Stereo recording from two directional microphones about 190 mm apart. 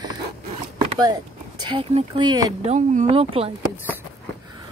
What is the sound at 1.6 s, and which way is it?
Speech, 25° right (ahead or behind).